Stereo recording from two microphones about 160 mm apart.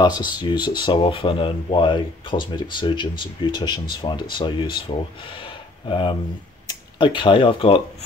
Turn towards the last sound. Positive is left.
turn(degrees=35)  # may be behind; listen again after turning